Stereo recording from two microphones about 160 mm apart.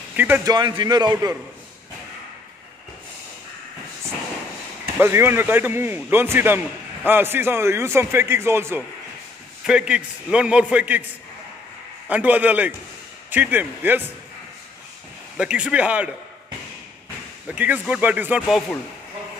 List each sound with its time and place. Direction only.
0.1 s a sound: 10° right (ahead or behind)
0.5 s a man's voice: 30° right (ahead or behind)
5.0 s a man's voice: 15° right (ahead or behind)
9.7 s a man's voice: 5° right (ahead or behind)
12.1 s a man's voice: 10° right (ahead or behind)
15.3 s a man's voice: 5° right (ahead or behind)
17.6 s a man's voice: 10° right (ahead or behind)